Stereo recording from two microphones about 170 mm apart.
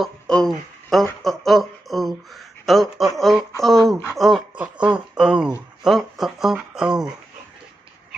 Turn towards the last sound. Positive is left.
turn(degrees=-5)  # may be behind; listen again after turning